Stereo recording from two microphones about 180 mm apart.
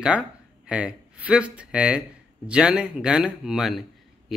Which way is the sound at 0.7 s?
5° right (ahead or behind).